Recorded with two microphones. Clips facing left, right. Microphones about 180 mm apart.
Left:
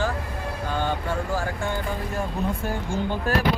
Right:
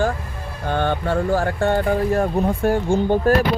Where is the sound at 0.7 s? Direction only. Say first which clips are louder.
Right 7 dB; 65° right (ahead or behind).